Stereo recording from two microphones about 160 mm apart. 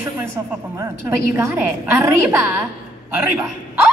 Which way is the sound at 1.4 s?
15° right (ahead or behind).